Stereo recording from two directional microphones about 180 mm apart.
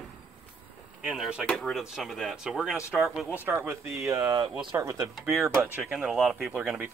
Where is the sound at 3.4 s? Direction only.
15° right (ahead or behind).